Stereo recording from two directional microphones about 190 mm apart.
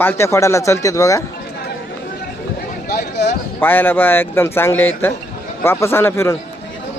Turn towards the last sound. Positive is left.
turn(degrees=15)  # may be behind; listen again after turning